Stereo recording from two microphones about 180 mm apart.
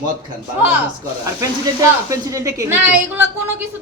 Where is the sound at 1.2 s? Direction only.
20° right (ahead or behind).